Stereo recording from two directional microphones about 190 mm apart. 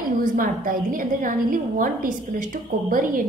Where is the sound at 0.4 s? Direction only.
45° right (ahead or behind).